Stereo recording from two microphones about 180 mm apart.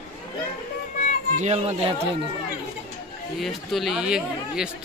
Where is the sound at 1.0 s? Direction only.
45° left (ahead or behind).